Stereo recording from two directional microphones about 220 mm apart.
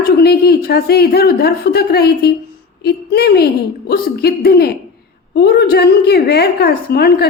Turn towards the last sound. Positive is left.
turn(degrees=45)  # may be behind; listen again after turning